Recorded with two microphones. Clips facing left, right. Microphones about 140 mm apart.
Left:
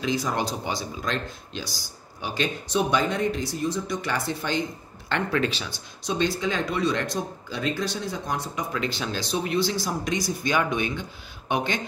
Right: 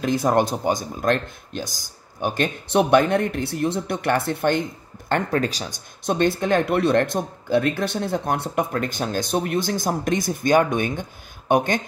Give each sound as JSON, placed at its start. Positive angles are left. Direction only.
{"t": 0.0, "sound": "speech", "side_deg": -55}
{"t": 5.1, "sound": "speech", "side_deg": -40}